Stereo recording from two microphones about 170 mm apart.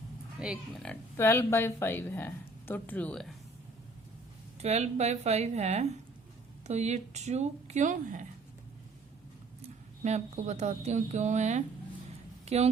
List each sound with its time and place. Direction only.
0.3 s speech: 5° right (ahead or behind)
1.1 s speech: 15° left (ahead or behind)
4.6 s speech: 40° right (ahead or behind)
9.6 s speech: 45° right (ahead or behind)